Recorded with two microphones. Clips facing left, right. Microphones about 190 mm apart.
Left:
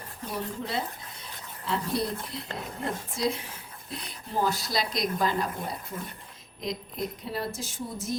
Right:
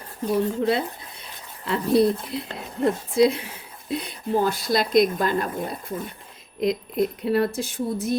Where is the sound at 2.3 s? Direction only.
65° right (ahead or behind).